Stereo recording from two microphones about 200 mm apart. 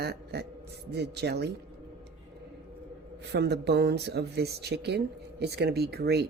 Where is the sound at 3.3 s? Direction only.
55° right (ahead or behind).